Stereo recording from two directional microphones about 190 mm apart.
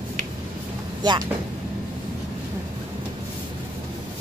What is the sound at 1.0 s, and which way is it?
Speech, 20° right (ahead or behind).